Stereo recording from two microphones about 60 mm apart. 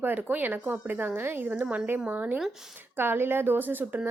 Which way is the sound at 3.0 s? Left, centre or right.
Right.